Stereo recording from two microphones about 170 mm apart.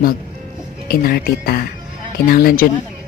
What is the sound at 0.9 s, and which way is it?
A woman's voice, 60° left (ahead or behind).